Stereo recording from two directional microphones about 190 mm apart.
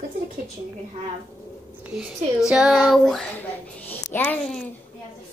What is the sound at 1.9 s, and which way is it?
A child's voice, 5° right (ahead or behind).